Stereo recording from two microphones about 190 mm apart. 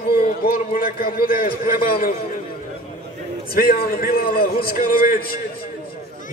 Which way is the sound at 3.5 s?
50° left (ahead or behind).